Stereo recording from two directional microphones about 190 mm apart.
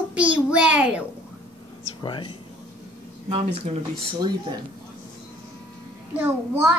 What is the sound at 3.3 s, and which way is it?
Speech, 30° right (ahead or behind).